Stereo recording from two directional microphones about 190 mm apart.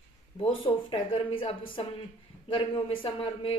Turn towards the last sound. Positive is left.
turn(degrees=30)  # may be behind; listen again after turning